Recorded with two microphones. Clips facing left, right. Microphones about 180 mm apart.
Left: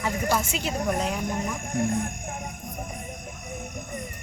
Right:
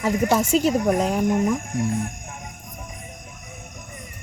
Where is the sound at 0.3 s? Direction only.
40° right (ahead or behind).